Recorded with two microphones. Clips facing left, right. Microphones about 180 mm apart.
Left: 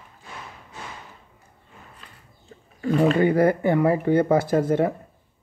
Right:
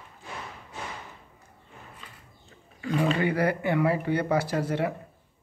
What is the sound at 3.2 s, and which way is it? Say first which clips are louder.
Speech: left 7 dB; 45° left (ahead or behind).